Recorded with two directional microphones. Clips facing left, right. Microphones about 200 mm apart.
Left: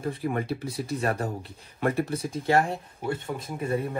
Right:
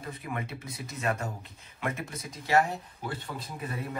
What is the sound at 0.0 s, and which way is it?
Speech, 30° left (ahead or behind).